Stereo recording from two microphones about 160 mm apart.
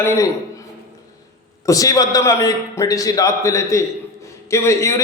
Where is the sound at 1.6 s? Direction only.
20° left (ahead or behind).